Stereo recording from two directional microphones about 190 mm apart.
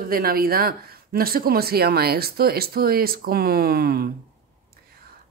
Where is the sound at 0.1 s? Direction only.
50° right (ahead or behind).